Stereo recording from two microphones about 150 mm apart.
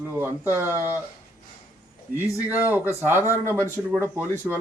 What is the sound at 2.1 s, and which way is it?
Speech, 75° right (ahead or behind).